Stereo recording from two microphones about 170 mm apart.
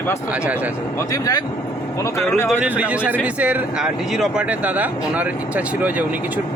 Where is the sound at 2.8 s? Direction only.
10° right (ahead or behind).